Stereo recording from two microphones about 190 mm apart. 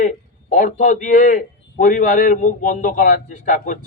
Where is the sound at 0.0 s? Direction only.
40° left (ahead or behind).